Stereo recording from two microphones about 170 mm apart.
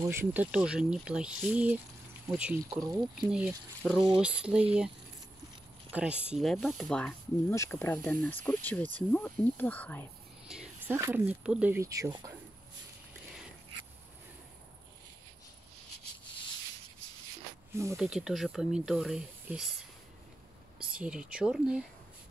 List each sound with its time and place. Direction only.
0.1 s speech: 10° right (ahead or behind)
2.6 s speech: 20° right (ahead or behind)
3.3 s speech: 5° right (ahead or behind)
5.9 s speech: 10° right (ahead or behind)
7.5 s speech: 15° left (ahead or behind)
10.5 s speech: 10° right (ahead or behind)
17.9 s speech: centre (ahead or behind)
20.9 s speech: 5° right (ahead or behind)